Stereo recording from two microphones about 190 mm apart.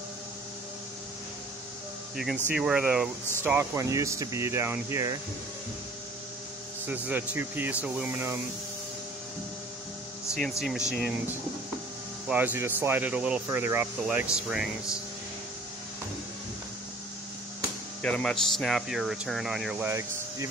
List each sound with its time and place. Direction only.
2.5 s speech: 5° right (ahead or behind)
6.9 s speech: 10° right (ahead or behind)
10.9 s speech: 5° right (ahead or behind)
18.0 s speech: 5° left (ahead or behind); by 20.4 s 15° right (ahead or behind)